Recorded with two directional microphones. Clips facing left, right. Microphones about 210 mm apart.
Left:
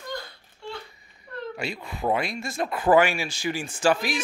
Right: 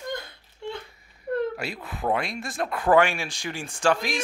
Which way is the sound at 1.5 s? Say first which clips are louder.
Left 1 dB; centre (ahead or behind).